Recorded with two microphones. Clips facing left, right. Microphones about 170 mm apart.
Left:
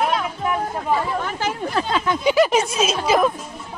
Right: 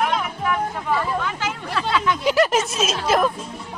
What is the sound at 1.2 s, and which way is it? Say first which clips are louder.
Speech: left 3 dB; 40° left (ahead or behind).